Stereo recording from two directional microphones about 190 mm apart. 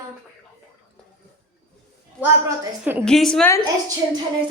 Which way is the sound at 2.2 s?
10° right (ahead or behind).